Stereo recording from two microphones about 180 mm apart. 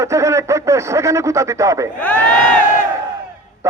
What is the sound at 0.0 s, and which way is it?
A man's voice, 15° right (ahead or behind).